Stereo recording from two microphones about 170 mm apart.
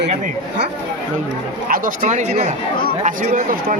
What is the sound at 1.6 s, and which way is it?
Speech, 55° right (ahead or behind).